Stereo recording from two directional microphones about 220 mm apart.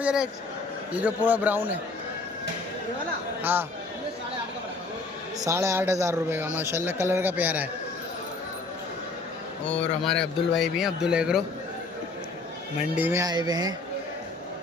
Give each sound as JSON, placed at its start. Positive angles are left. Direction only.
{"t": 0.0, "sound": "a man's voice", "side_deg": -5}
{"t": 3.4, "sound": "a man's voice", "side_deg": -10}
{"t": 5.4, "sound": "a man's voice", "side_deg": -15}
{"t": 9.6, "sound": "speech", "side_deg": 5}
{"t": 13.0, "sound": "a man's voice", "side_deg": -10}